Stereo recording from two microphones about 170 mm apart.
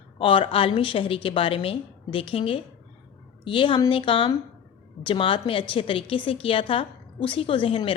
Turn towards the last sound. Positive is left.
turn(degrees=30)  # may be behind; listen again after turning